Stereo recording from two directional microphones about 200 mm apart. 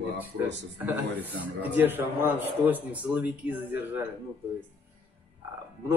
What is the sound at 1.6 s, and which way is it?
A man's voice, 10° right (ahead or behind).